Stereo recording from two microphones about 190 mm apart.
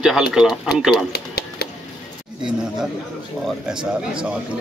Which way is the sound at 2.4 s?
5° right (ahead or behind).